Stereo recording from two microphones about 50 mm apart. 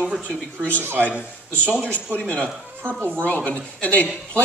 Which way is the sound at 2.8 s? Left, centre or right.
Right.